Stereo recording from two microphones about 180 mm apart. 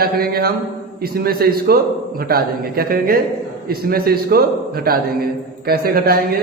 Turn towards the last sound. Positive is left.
turn(degrees=-55)  # may be behind; listen again after turning